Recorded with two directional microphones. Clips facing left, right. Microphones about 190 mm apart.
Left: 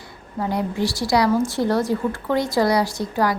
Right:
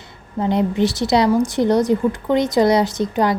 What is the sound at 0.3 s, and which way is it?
A woman's voice, 20° right (ahead or behind).